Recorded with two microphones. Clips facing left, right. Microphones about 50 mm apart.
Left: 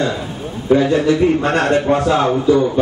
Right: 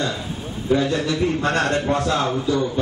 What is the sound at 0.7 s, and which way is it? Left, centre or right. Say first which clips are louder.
A man's voice: left 7 dB; left.